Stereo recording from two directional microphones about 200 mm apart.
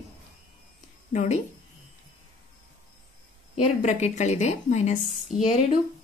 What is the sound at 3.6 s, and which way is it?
A woman's voice, 35° left (ahead or behind).